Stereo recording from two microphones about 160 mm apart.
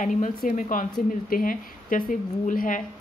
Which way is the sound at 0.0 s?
50° left (ahead or behind).